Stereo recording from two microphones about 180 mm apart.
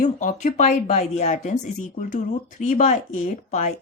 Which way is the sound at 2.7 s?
45° left (ahead or behind).